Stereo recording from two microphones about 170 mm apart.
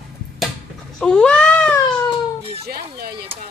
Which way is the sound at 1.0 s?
5° left (ahead or behind).